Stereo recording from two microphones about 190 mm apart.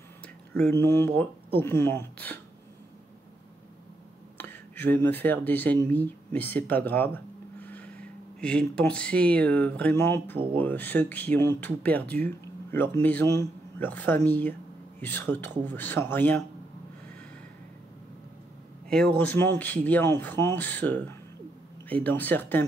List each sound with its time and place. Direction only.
0.6 s speech: 10° left (ahead or behind)
4.4 s speech: 10° left (ahead or behind)
7.6 s a sound: 10° left (ahead or behind)
8.4 s speech: 5° left (ahead or behind)
18.9 s speech: 5° left (ahead or behind)